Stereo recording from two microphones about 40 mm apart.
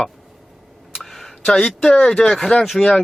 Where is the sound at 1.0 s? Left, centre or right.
Centre.